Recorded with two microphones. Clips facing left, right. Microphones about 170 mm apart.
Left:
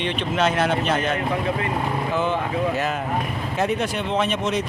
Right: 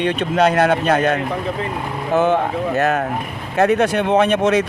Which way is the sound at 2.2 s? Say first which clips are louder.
Right 8 dB; 65° right (ahead or behind).